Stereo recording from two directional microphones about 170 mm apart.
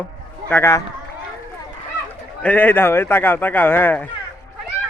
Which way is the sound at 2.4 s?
10° left (ahead or behind).